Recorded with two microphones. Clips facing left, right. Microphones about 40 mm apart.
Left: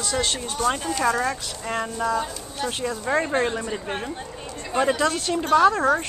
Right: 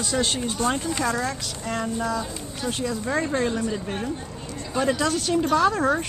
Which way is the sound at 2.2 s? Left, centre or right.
Left.